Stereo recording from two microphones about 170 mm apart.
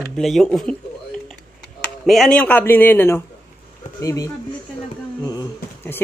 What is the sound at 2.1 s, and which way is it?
A man's voice, 5° left (ahead or behind).